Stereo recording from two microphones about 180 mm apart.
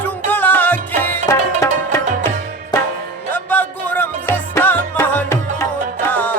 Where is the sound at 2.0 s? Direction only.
45° right (ahead or behind).